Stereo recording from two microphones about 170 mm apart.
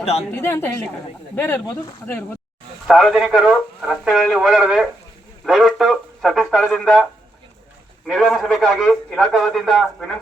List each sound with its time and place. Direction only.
0.3 s a woman's voice: 15° left (ahead or behind)
2.8 s speech: centre (ahead or behind)
8.0 s speech: centre (ahead or behind)